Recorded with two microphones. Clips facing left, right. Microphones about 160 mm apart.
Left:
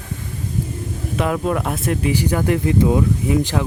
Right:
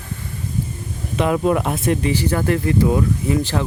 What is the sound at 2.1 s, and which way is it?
Speech, 10° left (ahead or behind).